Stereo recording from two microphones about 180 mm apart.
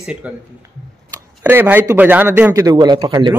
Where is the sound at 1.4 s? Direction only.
10° right (ahead or behind).